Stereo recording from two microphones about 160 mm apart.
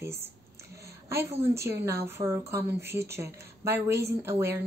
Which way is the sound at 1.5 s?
15° right (ahead or behind).